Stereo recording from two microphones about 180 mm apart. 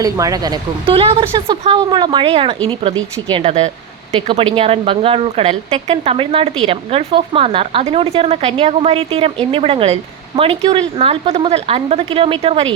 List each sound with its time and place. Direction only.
0.0 s a woman's voice: 20° right (ahead or behind)